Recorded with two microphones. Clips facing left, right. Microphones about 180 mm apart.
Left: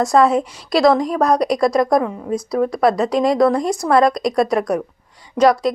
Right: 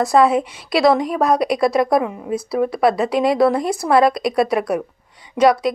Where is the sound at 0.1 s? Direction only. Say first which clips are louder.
Even; 5° right (ahead or behind).